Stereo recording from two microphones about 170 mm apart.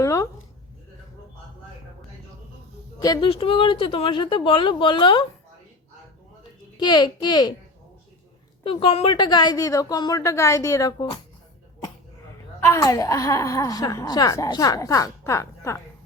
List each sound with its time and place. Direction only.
0.0 s a sound: 20° left (ahead or behind)
3.0 s speech: 20° left (ahead or behind)
3.2 s speech: 35° left (ahead or behind)
6.7 s speech: 25° left (ahead or behind)
8.6 s speech: 30° left (ahead or behind)
12.5 s speech: 15° left (ahead or behind)